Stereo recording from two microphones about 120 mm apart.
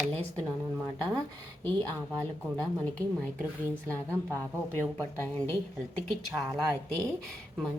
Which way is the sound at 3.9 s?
15° left (ahead or behind).